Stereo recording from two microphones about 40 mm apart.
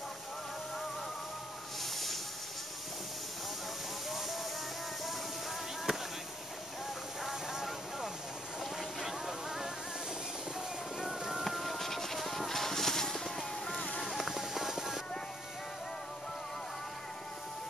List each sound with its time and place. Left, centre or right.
5.9 s fireworks: centre
7.2 s a sound: centre
11.0 s music: centre
11.4 s music: centre
14.0 s music: centre